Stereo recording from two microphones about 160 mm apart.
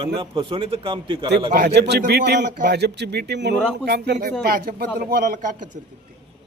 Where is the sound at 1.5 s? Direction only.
85° right.